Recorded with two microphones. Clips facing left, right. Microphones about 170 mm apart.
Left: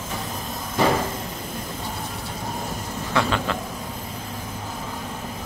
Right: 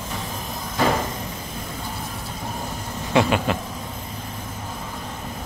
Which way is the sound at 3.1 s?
15° right (ahead or behind).